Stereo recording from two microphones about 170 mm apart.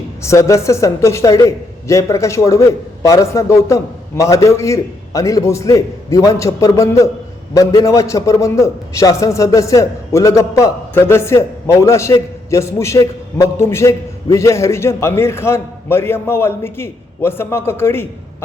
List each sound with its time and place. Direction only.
0.2 s a man's voice: 15° left (ahead or behind)